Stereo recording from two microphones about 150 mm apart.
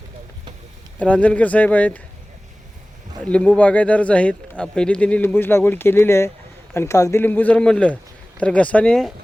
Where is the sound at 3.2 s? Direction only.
10° left (ahead or behind).